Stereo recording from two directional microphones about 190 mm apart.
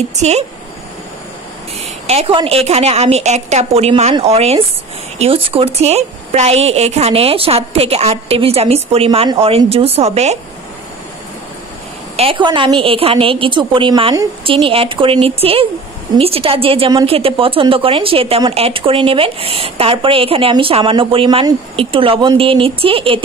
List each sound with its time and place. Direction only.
0.1 s a woman's voice: 35° right (ahead or behind)
2.0 s a woman's voice: 30° right (ahead or behind)
12.2 s a woman's voice: 25° right (ahead or behind)